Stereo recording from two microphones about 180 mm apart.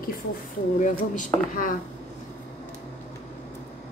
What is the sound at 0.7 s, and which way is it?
Speech, 45° left (ahead or behind).